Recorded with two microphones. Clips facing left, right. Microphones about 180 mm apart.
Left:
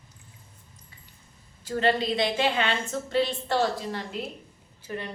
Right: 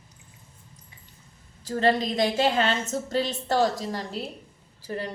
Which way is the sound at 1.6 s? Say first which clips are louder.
Right 2 dB; 35° right (ahead or behind).